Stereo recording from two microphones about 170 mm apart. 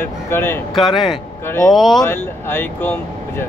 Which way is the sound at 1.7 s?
Centre (ahead or behind).